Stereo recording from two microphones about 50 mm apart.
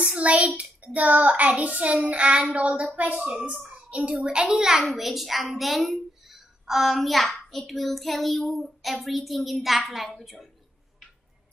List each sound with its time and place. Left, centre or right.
0.0 s child singing: right
3.5 s a sound: centre
4.3 s a child's voice: centre